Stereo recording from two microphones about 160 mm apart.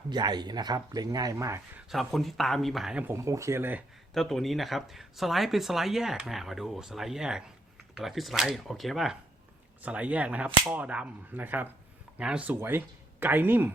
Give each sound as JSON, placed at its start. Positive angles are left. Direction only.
{"t": 0.1, "sound": "speech", "side_deg": -25}
{"t": 1.9, "sound": "speech", "side_deg": 0}
{"t": 4.1, "sound": "speech", "side_deg": 0}
{"t": 9.8, "sound": "whip", "side_deg": -10}
{"t": 12.1, "sound": "speech", "side_deg": -5}